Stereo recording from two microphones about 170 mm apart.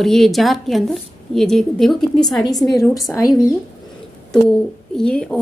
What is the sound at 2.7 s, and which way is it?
Speech, 20° left (ahead or behind).